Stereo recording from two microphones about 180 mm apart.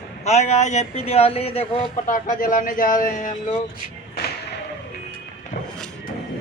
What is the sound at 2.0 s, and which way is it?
A man's voice, 45° left (ahead or behind).